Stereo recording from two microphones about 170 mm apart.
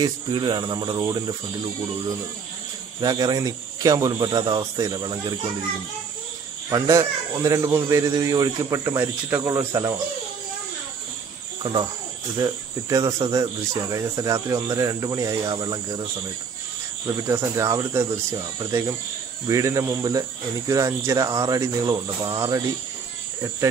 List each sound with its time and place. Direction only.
0.0 s speech: 30° right (ahead or behind)
3.0 s speech: 25° right (ahead or behind)
6.7 s speech: 20° right (ahead or behind)
11.6 s speech: 25° right (ahead or behind)
17.3 s speech: 20° right (ahead or behind)